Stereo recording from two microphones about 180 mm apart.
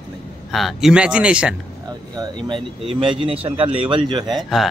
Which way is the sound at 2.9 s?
30° right (ahead or behind).